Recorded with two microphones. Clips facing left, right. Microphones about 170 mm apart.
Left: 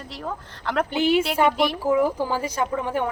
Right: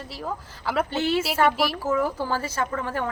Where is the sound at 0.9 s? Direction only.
15° left (ahead or behind).